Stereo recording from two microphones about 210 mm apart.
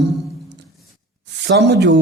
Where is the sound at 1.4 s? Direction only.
55° right (ahead or behind).